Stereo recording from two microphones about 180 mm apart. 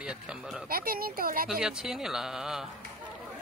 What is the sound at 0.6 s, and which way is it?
Speech, 55° right (ahead or behind).